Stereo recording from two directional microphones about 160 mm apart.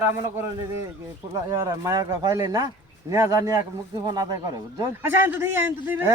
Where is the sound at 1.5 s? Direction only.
20° right (ahead or behind).